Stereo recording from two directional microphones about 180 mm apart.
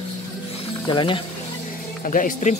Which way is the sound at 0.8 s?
25° left (ahead or behind).